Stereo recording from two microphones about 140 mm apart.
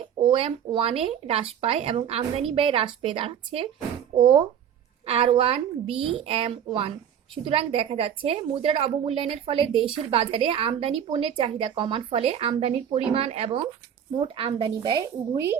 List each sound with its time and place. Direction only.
0.3 s a woman's voice: 40° right (ahead or behind)